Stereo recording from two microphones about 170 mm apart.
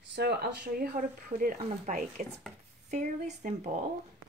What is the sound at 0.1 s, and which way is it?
Speech, 70° right (ahead or behind).